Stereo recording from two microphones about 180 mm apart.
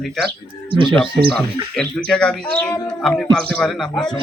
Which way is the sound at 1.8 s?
5° left (ahead or behind).